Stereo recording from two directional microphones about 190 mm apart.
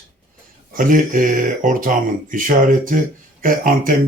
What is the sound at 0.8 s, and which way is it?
Speech, 45° right (ahead or behind).